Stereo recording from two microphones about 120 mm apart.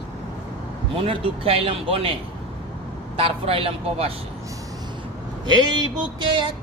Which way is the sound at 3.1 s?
50° right (ahead or behind).